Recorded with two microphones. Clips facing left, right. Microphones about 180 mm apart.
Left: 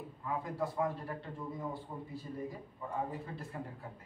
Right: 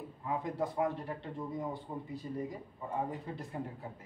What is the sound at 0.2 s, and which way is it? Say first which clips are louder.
Speech: right 2 dB; 20° right (ahead or behind).